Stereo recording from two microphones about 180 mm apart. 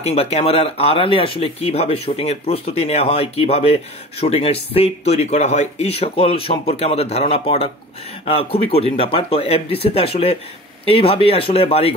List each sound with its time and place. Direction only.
0.0 s speech: 35° left (ahead or behind)